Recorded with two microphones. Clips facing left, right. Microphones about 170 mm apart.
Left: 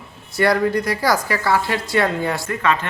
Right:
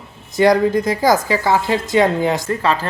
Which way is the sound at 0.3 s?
20° right (ahead or behind).